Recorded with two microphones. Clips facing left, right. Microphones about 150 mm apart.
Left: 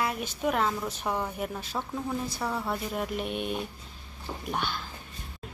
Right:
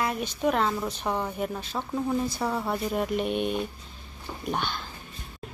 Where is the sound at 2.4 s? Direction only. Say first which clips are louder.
Right 3 dB; 20° right (ahead or behind).